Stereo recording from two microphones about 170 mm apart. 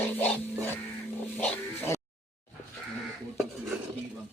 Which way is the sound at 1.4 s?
15° left (ahead or behind).